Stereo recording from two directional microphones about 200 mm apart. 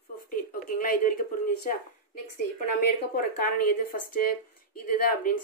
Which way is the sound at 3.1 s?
45° left (ahead or behind).